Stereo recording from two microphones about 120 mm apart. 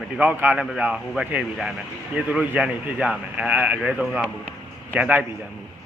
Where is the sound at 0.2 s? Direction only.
15° right (ahead or behind).